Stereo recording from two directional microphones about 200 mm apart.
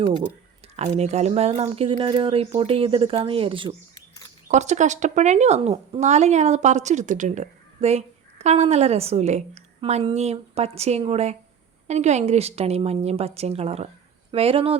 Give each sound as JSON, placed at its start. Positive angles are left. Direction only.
{"t": 0.8, "sound": "speech", "side_deg": -35}